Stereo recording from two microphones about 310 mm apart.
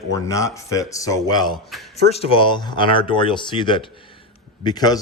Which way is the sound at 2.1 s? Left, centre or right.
Centre.